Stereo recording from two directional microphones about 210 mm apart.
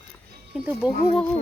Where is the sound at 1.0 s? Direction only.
25° left (ahead or behind).